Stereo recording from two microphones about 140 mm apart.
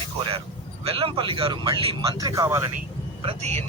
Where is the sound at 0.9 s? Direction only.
40° right (ahead or behind).